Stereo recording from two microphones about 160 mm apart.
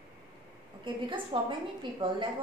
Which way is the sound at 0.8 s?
30° right (ahead or behind).